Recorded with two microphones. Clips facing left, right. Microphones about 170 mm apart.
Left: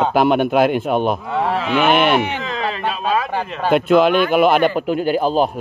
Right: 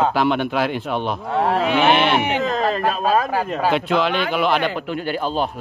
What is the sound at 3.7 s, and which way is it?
Speech, 50° left (ahead or behind).